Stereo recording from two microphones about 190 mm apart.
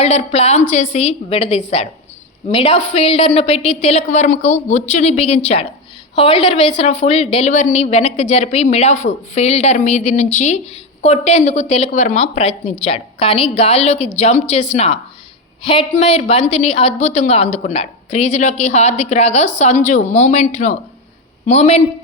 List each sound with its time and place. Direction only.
0.0 s a woman's voice: 35° left (ahead or behind)